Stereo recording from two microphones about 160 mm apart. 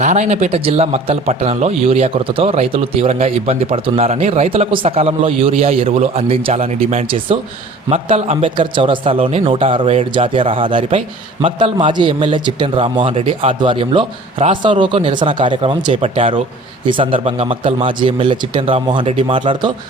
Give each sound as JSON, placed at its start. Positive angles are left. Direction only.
{"t": 0.0, "sound": "a man's voice", "side_deg": -50}